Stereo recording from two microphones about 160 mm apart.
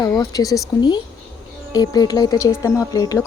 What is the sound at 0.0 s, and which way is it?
Speech, 25° left (ahead or behind).